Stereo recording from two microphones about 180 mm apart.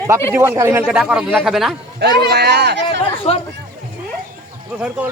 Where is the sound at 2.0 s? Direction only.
65° right (ahead or behind).